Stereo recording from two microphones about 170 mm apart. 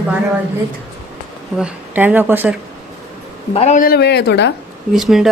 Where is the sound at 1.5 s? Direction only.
5° right (ahead or behind).